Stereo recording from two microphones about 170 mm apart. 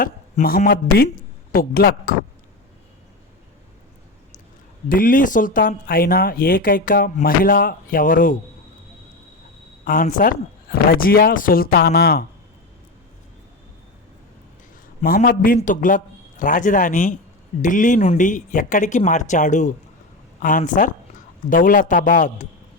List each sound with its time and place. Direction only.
0.0 s speech: 55° left (ahead or behind)
4.9 s speech: 55° left (ahead or behind)
9.8 s speech: 55° left (ahead or behind)
15.0 s a man's voice: 55° left (ahead or behind)